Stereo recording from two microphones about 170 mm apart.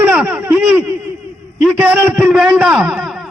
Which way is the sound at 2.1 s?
5° right (ahead or behind).